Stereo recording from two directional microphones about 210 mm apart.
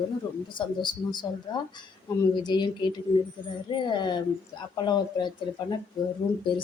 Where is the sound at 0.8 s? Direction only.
20° left (ahead or behind).